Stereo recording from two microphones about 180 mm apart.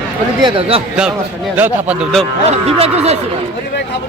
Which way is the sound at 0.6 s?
30° right (ahead or behind).